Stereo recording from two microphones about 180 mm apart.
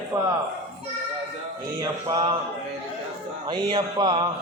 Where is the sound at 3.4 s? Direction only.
25° right (ahead or behind).